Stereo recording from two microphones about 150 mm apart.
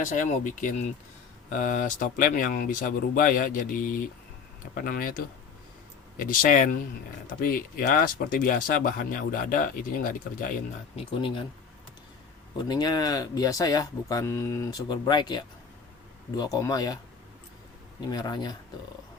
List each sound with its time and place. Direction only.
0.0 s speech: 55° left (ahead or behind)
10.9 s speech: 35° left (ahead or behind)
12.5 s speech: 25° left (ahead or behind)
18.1 s speech: 30° left (ahead or behind)